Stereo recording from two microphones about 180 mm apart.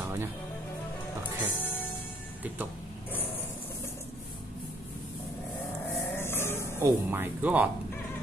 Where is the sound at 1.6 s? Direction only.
10° left (ahead or behind).